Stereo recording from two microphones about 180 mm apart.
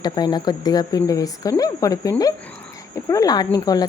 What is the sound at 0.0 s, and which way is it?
Speech, 25° left (ahead or behind).